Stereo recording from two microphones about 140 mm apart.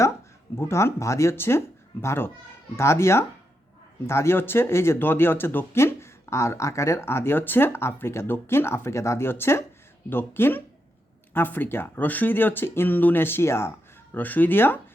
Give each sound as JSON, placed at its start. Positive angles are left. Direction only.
{"t": 0.5, "sound": "speech", "side_deg": 20}